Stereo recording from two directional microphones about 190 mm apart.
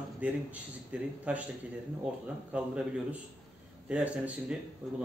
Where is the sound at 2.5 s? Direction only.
5° right (ahead or behind).